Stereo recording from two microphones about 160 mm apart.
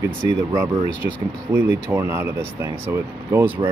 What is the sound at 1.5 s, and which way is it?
Speech, 15° right (ahead or behind).